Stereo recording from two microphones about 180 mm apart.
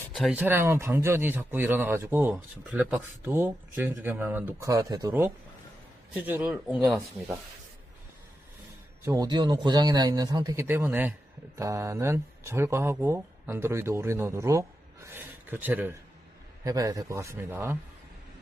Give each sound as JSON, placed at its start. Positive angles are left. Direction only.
{"t": 0.1, "sound": "speech", "side_deg": -5}
{"t": 9.0, "sound": "a man's voice", "side_deg": -20}
{"t": 15.0, "sound": "a sound", "side_deg": -10}
{"t": 16.6, "sound": "speech", "side_deg": -20}